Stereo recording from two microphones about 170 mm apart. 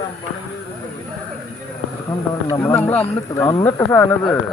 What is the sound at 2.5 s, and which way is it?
Speech, 15° left (ahead or behind).